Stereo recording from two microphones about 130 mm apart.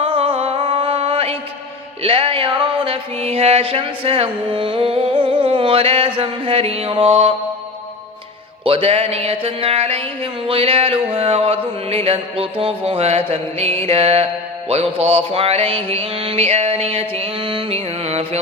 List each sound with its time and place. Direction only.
0.0 s a sound: 45° right (ahead or behind)
2.0 s music: 45° right (ahead or behind)
8.6 s music: 50° right (ahead or behind)